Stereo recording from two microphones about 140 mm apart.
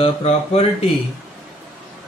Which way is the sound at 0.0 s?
45° left (ahead or behind).